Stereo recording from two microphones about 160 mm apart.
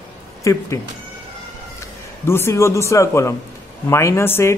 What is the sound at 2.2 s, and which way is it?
Speech, 15° left (ahead or behind).